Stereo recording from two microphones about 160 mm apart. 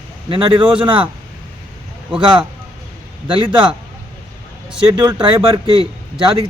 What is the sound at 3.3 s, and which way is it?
Speech, 35° right (ahead or behind).